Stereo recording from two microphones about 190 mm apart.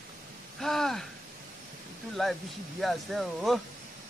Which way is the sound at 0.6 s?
Centre (ahead or behind).